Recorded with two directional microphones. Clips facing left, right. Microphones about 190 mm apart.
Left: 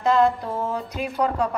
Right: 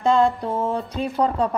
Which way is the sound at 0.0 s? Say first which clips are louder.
Right 1 dB; 30° right (ahead or behind).